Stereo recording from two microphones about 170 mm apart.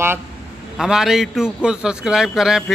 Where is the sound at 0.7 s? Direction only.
5° right (ahead or behind).